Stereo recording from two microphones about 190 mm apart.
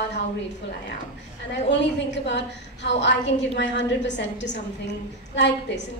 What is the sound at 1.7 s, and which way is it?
A woman's voice, 70° left (ahead or behind).